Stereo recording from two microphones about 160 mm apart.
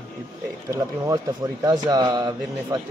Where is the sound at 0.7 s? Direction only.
20° right (ahead or behind).